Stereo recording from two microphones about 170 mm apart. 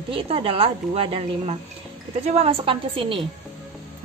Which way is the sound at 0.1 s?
35° right (ahead or behind).